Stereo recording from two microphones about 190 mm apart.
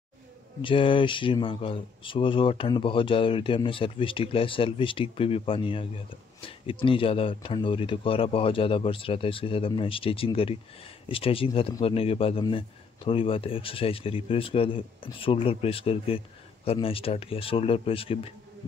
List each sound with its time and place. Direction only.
0.6 s speech: 25° left (ahead or behind)